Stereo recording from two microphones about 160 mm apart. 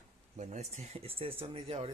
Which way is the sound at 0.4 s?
45° right (ahead or behind).